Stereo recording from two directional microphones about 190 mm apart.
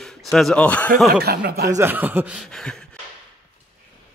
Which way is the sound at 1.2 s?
55° right (ahead or behind).